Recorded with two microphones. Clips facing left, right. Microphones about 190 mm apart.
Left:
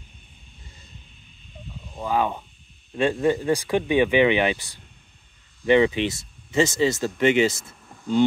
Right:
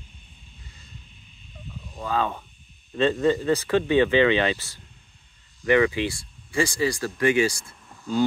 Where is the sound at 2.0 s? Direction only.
15° left (ahead or behind).